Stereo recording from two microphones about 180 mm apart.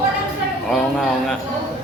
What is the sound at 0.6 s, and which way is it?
Speech, 5° left (ahead or behind).